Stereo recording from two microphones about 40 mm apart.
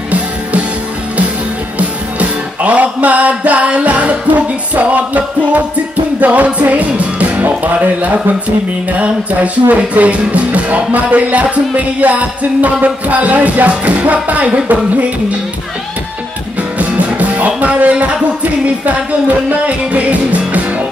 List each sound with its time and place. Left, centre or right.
0.1 s music: right
1.8 s music: right
16.7 s music: right